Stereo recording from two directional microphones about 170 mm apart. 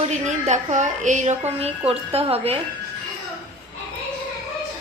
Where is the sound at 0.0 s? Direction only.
45° right (ahead or behind).